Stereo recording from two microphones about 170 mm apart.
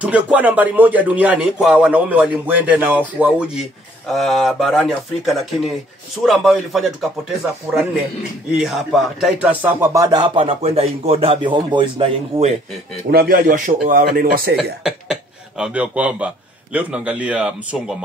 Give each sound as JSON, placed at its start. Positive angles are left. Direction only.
{"t": 0.0, "sound": "speech", "side_deg": -10}
{"t": 13.1, "sound": "speech", "side_deg": -65}
{"t": 13.7, "sound": "speech", "side_deg": -50}
{"t": 14.8, "sound": "speech", "side_deg": -5}